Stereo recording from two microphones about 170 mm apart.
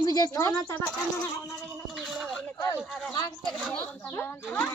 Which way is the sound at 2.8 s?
Centre (ahead or behind).